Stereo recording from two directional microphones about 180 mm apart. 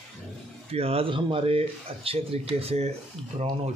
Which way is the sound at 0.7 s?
35° right (ahead or behind).